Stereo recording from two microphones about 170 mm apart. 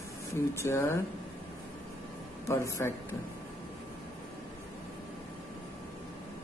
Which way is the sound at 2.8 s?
15° left (ahead or behind).